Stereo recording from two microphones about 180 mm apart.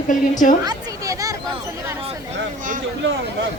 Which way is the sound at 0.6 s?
20° right (ahead or behind).